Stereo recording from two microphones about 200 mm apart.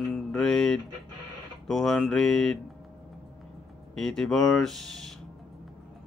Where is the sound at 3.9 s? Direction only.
Centre (ahead or behind).